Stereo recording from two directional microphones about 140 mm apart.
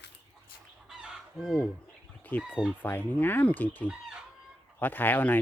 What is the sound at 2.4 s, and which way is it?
Speech, 5° right (ahead or behind).